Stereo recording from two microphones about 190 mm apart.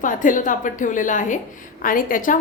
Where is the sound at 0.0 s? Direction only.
45° left (ahead or behind).